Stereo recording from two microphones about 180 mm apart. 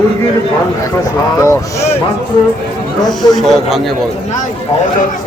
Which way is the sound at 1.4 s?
15° left (ahead or behind).